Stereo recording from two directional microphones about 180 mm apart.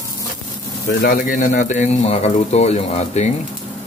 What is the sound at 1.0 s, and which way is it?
Speech, 45° left (ahead or behind).